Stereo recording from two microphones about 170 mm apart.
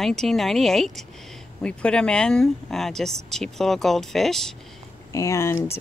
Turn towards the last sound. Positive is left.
turn(degrees=15)  # may be behind; listen again after turning